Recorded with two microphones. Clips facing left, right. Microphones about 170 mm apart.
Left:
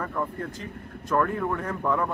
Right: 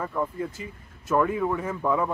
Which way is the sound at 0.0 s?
10° right (ahead or behind).